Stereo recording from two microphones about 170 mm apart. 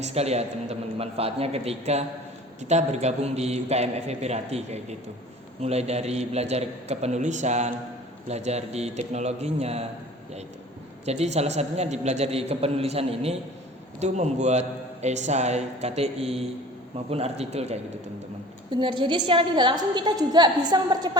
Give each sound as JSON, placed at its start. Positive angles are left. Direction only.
{"t": 0.0, "sound": "a man's voice", "side_deg": -40}
{"t": 11.0, "sound": "a man's voice", "side_deg": -40}